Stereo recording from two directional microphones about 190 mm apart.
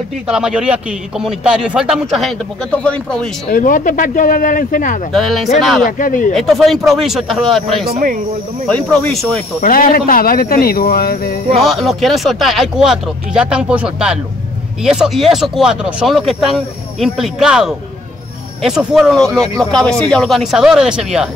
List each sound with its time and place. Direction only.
0.3 s speech: 5° right (ahead or behind)
3.5 s speech: 45° left (ahead or behind)
5.1 s speech: centre (ahead or behind)
5.9 s speech: 45° left (ahead or behind)
6.3 s speech: centre (ahead or behind)
7.8 s speech: 50° right (ahead or behind)
8.6 s speech: 5° left (ahead or behind)
9.6 s speech: 45° left (ahead or behind)
11.6 s speech: centre (ahead or behind)